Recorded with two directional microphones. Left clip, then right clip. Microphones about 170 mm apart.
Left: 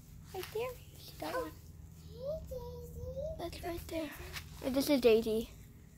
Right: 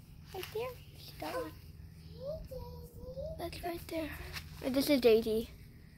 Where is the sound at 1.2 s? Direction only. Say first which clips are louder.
Left 1 dB; 20° left (ahead or behind).